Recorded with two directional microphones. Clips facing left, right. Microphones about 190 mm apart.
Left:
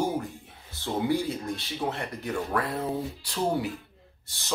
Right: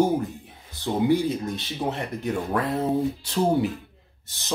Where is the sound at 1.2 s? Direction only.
20° right (ahead or behind).